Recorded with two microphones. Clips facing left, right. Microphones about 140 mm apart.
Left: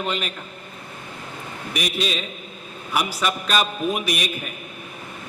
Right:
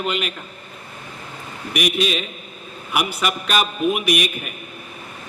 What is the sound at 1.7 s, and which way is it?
Speech, 30° left (ahead or behind).